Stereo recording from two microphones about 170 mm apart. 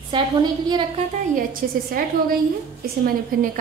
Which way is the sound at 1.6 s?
55° right (ahead or behind).